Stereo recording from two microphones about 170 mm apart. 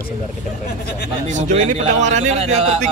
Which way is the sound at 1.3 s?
45° right (ahead or behind).